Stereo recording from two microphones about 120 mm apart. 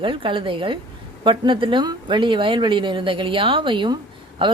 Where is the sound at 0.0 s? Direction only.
45° right (ahead or behind).